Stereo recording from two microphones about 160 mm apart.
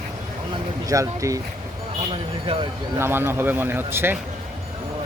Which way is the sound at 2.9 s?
15° right (ahead or behind).